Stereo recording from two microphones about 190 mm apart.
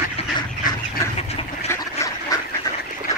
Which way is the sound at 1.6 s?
15° left (ahead or behind).